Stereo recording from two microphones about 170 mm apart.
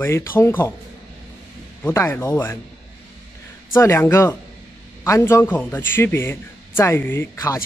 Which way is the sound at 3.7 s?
15° left (ahead or behind).